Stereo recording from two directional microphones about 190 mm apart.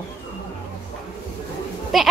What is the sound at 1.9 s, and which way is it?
Speech, centre (ahead or behind).